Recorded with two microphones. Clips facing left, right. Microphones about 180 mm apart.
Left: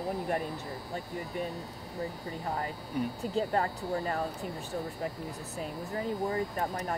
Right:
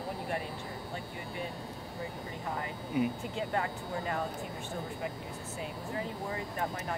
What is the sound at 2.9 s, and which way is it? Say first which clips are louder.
Speech: right 3 dB; 5° right (ahead or behind).